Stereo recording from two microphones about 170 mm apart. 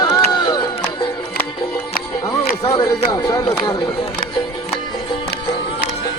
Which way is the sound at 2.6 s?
20° left (ahead or behind).